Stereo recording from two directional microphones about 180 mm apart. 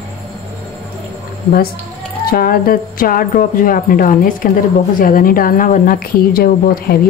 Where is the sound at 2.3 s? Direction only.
55° left (ahead or behind).